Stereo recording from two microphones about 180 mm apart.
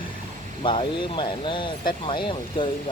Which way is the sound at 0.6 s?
30° left (ahead or behind).